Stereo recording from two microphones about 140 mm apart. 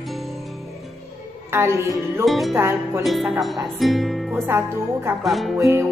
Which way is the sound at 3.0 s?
Centre (ahead or behind).